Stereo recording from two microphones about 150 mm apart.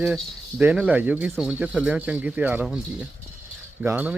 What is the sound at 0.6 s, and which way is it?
Speech, 10° right (ahead or behind).